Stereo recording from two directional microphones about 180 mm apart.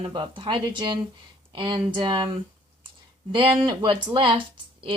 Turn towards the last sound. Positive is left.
turn(degrees=-25)  # may be behind; listen again after turning